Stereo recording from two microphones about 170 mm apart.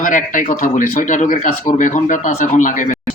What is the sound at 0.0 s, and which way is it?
A man's voice, 50° left (ahead or behind).